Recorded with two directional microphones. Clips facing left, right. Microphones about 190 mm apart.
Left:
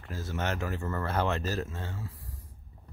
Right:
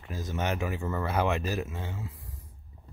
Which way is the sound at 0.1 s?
15° right (ahead or behind).